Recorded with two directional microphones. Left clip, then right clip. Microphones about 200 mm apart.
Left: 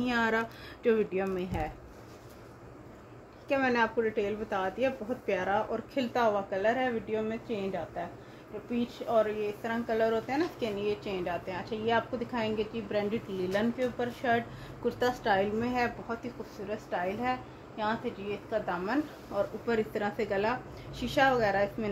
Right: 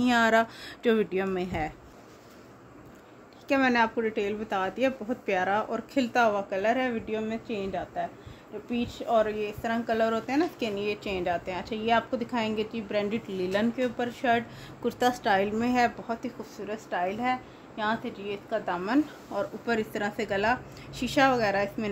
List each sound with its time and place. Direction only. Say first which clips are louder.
0.0 s speech: right 6 dB; 55° right (ahead or behind)
3.4 s speech: right 4 dB; 60° right (ahead or behind)